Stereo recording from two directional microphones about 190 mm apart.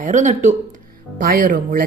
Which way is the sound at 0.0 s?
40° right (ahead or behind).